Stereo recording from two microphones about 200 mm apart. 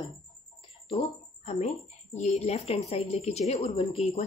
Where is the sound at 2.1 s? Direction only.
30° left (ahead or behind).